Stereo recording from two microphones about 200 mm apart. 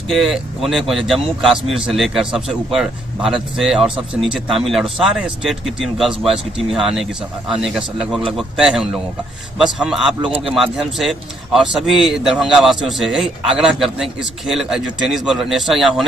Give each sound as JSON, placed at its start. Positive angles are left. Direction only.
{"t": 0.1, "sound": "a man's voice", "side_deg": 0}
{"t": 10.2, "sound": "speech", "side_deg": -25}
{"t": 10.5, "sound": "a man's voice", "side_deg": 0}